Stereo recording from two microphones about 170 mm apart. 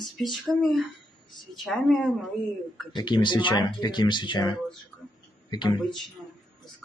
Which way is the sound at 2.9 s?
25° left (ahead or behind).